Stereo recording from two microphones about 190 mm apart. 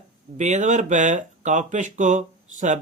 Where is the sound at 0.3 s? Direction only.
40° right (ahead or behind).